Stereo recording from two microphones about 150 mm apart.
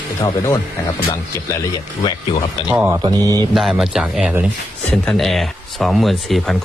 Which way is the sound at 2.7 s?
10° right (ahead or behind).